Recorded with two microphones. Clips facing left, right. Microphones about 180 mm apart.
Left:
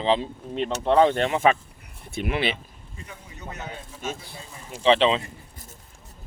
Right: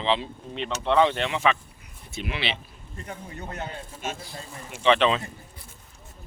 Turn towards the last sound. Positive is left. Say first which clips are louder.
# left 2 dB
turn(degrees=25)  # may be behind; listen again after turning